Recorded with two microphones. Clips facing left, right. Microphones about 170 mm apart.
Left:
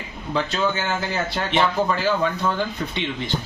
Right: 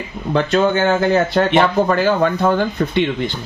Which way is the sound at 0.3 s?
60° right (ahead or behind).